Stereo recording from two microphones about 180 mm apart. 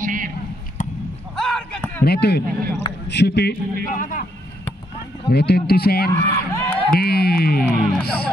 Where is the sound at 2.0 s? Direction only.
60° left (ahead or behind).